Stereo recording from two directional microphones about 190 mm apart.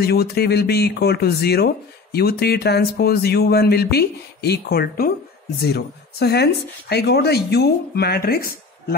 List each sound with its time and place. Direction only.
0.0 s speech: 55° left (ahead or behind)